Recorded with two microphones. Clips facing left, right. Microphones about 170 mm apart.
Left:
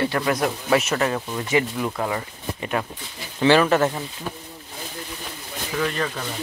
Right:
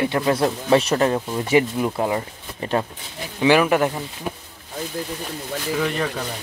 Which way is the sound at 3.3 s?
10° right (ahead or behind).